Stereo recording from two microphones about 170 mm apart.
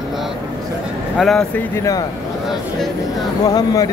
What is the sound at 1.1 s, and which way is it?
Speech, centre (ahead or behind).